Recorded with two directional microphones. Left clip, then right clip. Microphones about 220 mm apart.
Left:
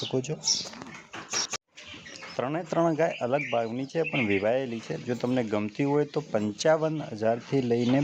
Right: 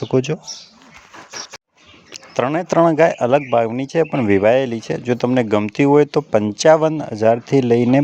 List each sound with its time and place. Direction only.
0.1 s speech: 40° right (ahead or behind)
2.1 s speech: 35° right (ahead or behind)